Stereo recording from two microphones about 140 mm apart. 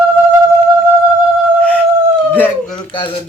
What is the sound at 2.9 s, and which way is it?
Speech, 35° left (ahead or behind).